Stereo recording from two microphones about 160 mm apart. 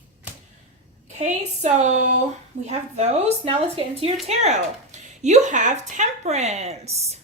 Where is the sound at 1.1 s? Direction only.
45° right (ahead or behind).